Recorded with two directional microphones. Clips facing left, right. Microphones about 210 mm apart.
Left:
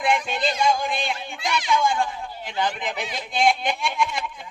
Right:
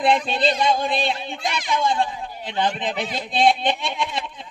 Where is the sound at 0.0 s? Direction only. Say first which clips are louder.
Right 4 dB; 35° right (ahead or behind).